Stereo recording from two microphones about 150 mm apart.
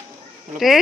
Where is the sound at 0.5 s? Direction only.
Centre (ahead or behind).